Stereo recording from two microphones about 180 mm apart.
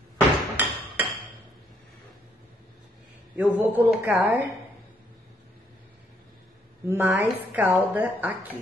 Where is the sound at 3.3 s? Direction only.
10° right (ahead or behind).